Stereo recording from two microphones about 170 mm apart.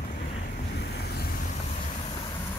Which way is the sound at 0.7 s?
70° left (ahead or behind).